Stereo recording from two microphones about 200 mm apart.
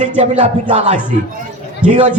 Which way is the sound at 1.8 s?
35° right (ahead or behind).